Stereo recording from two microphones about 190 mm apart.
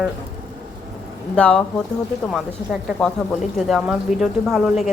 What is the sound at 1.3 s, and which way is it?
A woman's voice, 5° left (ahead or behind).